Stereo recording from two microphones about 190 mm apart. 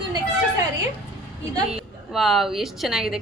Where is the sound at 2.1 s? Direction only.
Centre (ahead or behind).